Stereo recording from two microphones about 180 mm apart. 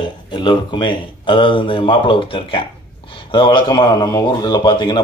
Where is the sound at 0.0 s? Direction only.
25° left (ahead or behind).